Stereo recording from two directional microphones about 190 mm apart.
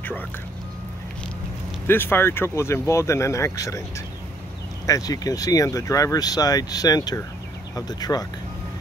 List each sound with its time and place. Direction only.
1.9 s speech: 10° left (ahead or behind)
4.8 s speech: 20° left (ahead or behind)